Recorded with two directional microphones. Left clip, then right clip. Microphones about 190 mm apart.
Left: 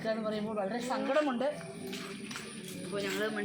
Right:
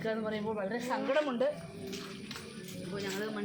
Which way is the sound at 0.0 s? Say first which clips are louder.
Left 1 dB; 20° right (ahead or behind).